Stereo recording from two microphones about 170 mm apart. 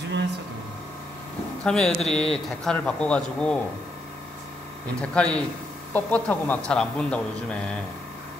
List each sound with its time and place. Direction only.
1.6 s a man's voice: 5° left (ahead or behind)
5.0 s speech: 5° left (ahead or behind)